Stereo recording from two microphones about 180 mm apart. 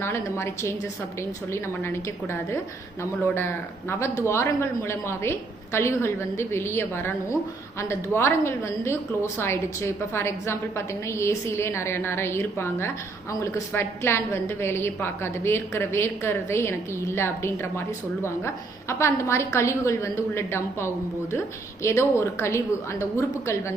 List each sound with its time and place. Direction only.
0.0 s a woman's voice: 15° left (ahead or behind)
1.8 s a woman's voice: 15° left (ahead or behind)